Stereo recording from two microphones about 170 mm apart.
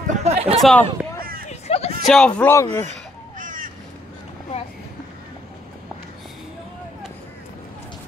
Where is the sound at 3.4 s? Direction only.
50° right (ahead or behind).